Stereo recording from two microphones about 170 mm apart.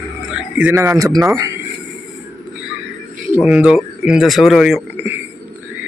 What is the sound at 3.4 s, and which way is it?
Speech, 5° right (ahead or behind).